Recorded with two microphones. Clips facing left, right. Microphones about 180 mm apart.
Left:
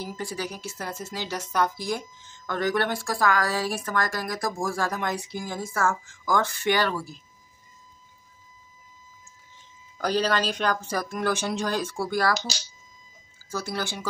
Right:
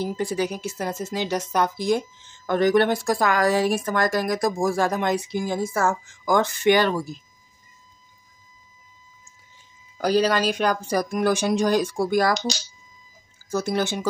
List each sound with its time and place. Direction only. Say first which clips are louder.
0.0 s a woman's voice: right 8 dB; 20° right (ahead or behind)
9.9 s speech: right 4 dB; 10° right (ahead or behind)
13.5 s a woman's voice: right 7 dB; 20° right (ahead or behind)